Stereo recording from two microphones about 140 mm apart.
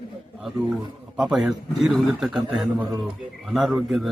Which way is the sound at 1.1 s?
5° right (ahead or behind).